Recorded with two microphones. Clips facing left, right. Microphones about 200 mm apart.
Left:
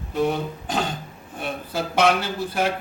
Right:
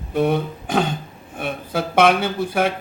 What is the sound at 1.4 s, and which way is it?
Speech, 55° right (ahead or behind).